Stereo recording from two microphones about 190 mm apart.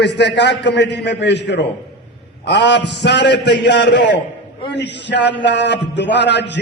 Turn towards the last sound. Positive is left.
turn(degrees=65)  # may be behind; listen again after turning